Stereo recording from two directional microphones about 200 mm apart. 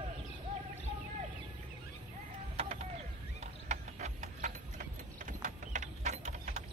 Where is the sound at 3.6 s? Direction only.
35° right (ahead or behind).